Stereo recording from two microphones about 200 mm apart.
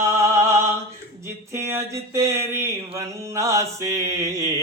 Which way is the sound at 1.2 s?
15° right (ahead or behind).